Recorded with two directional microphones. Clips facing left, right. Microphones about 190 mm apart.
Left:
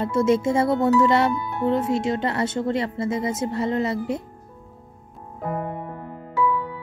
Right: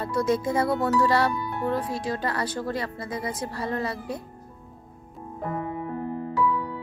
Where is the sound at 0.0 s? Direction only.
25° left (ahead or behind).